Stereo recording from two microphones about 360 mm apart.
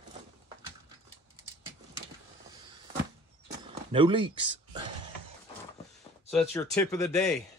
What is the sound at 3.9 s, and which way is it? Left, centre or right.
Speech, centre.